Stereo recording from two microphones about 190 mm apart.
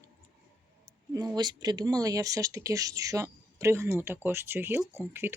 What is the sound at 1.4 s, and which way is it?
Speech, 20° right (ahead or behind).